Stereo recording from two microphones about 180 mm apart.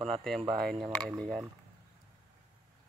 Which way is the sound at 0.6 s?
5° left (ahead or behind).